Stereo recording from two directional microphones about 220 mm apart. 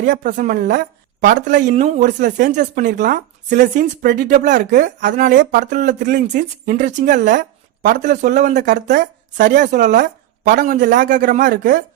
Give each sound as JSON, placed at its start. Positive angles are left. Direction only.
{"t": 0.0, "sound": "a woman's voice", "side_deg": -40}
{"t": 1.3, "sound": "speech", "side_deg": -35}